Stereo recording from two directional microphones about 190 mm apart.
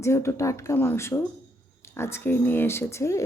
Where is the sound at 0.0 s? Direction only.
15° left (ahead or behind).